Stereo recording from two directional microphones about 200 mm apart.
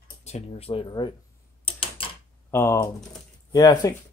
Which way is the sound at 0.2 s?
30° left (ahead or behind).